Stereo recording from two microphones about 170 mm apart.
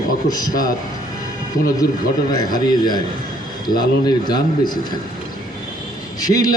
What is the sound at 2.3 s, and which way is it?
Speech, 25° left (ahead or behind).